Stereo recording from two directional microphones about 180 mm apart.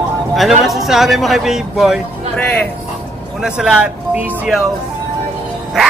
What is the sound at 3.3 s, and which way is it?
Speech, 5° right (ahead or behind).